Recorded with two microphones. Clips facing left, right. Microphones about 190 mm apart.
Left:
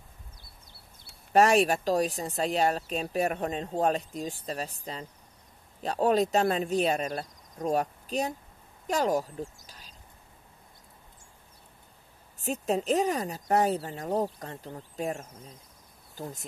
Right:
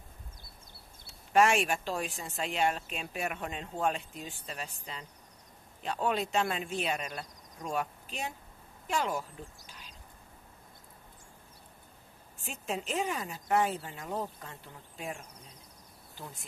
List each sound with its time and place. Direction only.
1.3 s a woman's voice: 40° left (ahead or behind)
12.4 s a woman's voice: 40° left (ahead or behind)